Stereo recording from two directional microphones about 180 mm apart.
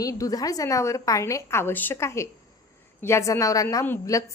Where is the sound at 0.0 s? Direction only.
20° left (ahead or behind).